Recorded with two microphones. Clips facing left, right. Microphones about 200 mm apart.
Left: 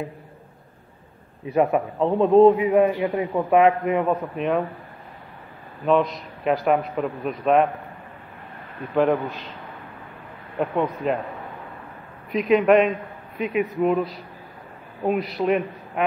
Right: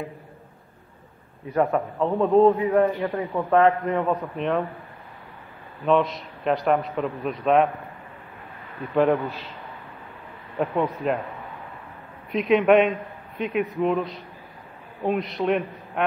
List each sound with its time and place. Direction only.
1.5 s a man's voice: 15° left (ahead or behind)
4.1 s a man's voice: centre (ahead or behind)
5.9 s a man's voice: centre (ahead or behind)
8.9 s a man's voice: centre (ahead or behind)
10.6 s a man's voice: centre (ahead or behind)
12.3 s a man's voice: centre (ahead or behind)